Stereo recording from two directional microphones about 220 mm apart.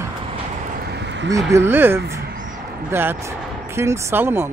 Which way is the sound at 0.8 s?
50° right (ahead or behind).